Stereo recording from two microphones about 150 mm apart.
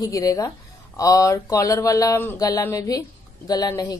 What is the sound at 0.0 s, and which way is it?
A woman's voice, 25° left (ahead or behind).